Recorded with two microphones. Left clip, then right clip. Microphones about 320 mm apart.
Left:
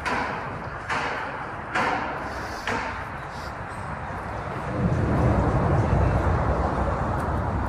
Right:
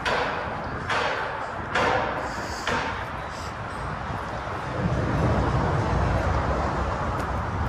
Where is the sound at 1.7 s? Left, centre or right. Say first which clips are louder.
Right 1 dB; right.